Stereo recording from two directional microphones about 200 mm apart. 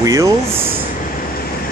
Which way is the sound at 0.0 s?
15° right (ahead or behind).